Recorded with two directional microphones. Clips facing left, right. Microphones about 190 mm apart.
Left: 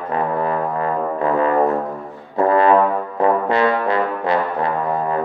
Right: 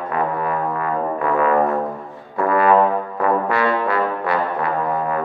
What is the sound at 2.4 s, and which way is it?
Brass instrument, 30° left (ahead or behind).